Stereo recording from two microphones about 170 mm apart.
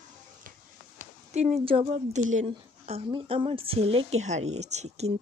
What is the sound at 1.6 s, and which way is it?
A woman's voice, 35° right (ahead or behind).